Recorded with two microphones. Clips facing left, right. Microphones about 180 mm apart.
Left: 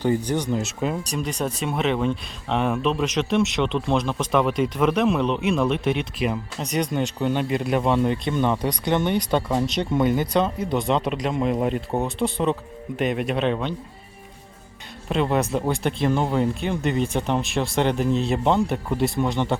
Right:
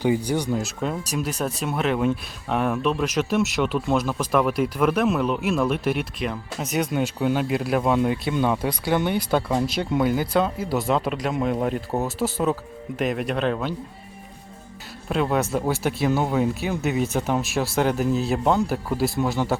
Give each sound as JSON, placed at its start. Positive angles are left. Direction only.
{"t": 0.0, "sound": "speech", "side_deg": -10}
{"t": 0.6, "sound": "speech", "side_deg": 0}
{"t": 15.1, "sound": "speech", "side_deg": 0}